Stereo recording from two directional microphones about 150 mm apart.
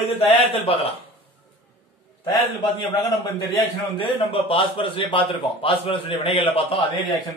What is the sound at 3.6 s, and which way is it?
A man's voice, 35° left (ahead or behind).